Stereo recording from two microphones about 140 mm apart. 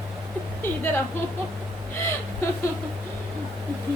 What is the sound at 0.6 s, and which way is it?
Speech, 15° left (ahead or behind).